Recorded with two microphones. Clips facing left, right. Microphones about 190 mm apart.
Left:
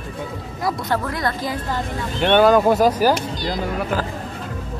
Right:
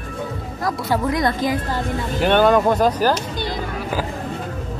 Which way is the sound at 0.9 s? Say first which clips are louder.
Right 3 dB; 20° right (ahead or behind).